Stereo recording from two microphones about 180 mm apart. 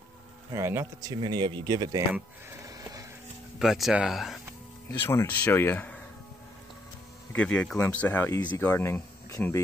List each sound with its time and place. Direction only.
0.5 s speech: 15° right (ahead or behind)
2.1 s a sound: 15° right (ahead or behind)
3.5 s speech: centre (ahead or behind)
5.0 s speech: 10° left (ahead or behind)
7.3 s speech: 5° left (ahead or behind)